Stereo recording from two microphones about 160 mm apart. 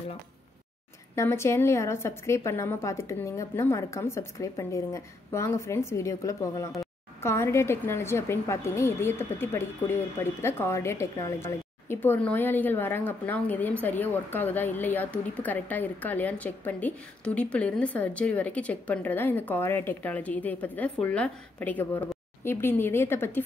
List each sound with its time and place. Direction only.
1.1 s a woman's voice: 15° left (ahead or behind)